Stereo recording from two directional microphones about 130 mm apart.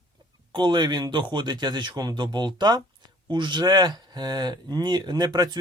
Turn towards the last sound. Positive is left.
turn(degrees=-30)  # may be behind; listen again after turning